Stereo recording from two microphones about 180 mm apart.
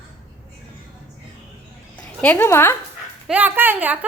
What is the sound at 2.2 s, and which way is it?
Speech, 10° left (ahead or behind).